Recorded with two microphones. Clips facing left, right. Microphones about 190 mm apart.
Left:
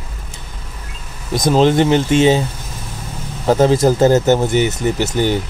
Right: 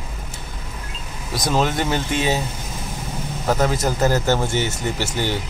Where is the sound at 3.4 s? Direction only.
30° left (ahead or behind).